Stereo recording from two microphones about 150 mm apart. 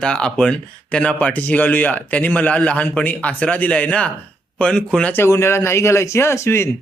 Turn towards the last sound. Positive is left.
turn(degrees=15)  # may be behind; listen again after turning